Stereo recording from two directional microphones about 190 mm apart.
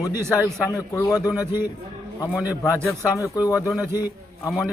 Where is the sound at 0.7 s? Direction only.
15° left (ahead or behind).